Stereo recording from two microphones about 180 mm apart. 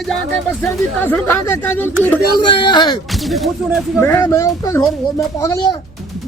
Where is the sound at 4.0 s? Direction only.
15° left (ahead or behind).